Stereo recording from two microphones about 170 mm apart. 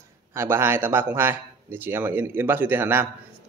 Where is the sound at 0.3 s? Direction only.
15° right (ahead or behind).